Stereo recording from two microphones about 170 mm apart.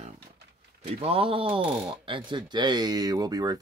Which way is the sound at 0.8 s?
35° right (ahead or behind).